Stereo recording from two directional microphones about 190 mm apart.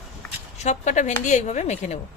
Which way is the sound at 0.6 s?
40° left (ahead or behind).